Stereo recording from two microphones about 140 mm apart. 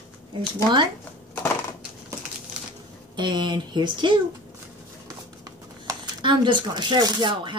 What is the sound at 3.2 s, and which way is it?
Speech, 35° right (ahead or behind).